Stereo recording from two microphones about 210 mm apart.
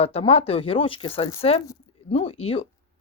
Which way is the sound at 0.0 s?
30° left (ahead or behind).